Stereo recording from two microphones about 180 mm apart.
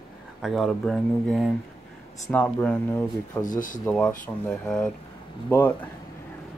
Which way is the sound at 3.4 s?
45° left (ahead or behind).